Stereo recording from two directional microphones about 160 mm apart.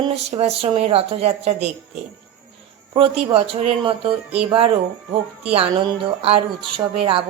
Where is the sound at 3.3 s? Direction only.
40° right (ahead or behind).